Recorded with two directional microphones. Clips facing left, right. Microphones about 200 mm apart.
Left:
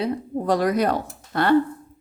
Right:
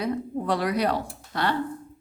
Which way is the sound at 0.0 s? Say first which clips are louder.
Left 3 dB; 35° left (ahead or behind).